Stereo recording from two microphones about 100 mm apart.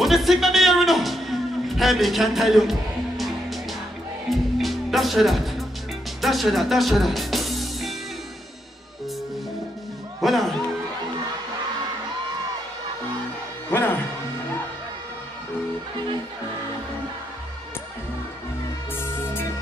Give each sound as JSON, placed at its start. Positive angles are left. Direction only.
{"t": 0.0, "sound": "a sound", "side_deg": 0}
{"t": 4.3, "sound": "music", "side_deg": 0}
{"t": 6.2, "sound": "speech", "side_deg": 0}
{"t": 10.2, "sound": "speech", "side_deg": 0}
{"t": 13.7, "sound": "music", "side_deg": 20}
{"t": 18.9, "sound": "music", "side_deg": 25}